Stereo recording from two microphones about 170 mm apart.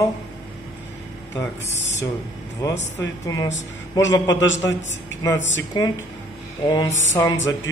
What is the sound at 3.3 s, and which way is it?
Speech, 20° left (ahead or behind).